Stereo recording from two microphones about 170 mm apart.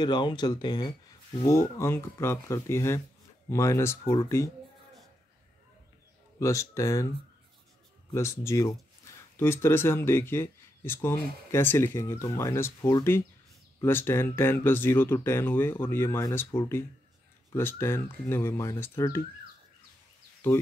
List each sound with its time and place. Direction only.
0.0 s speech: 25° left (ahead or behind)
6.4 s speech: 20° left (ahead or behind)
8.1 s speech: 15° left (ahead or behind)